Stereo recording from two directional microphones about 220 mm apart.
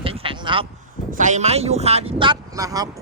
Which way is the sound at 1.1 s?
35° right (ahead or behind).